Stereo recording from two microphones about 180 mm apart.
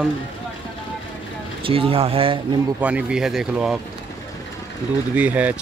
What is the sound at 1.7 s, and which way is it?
Speech, 30° right (ahead or behind).